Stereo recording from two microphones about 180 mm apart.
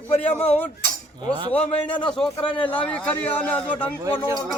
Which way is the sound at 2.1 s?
5° left (ahead or behind).